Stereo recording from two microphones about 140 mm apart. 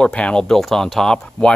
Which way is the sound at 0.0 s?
10° left (ahead or behind).